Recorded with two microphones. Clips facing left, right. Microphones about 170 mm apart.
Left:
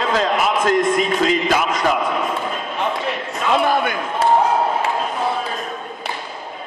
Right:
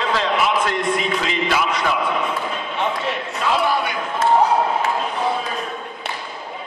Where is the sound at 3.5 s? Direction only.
50° left (ahead or behind).